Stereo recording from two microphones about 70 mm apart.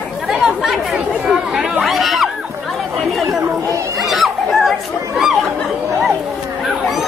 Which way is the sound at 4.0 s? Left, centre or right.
Centre.